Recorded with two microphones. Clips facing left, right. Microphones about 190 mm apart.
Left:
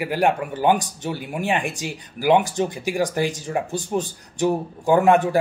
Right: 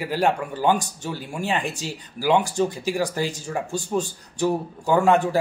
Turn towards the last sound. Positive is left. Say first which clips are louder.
# left 2 dB
turn(degrees=15)  # may be behind; listen again after turning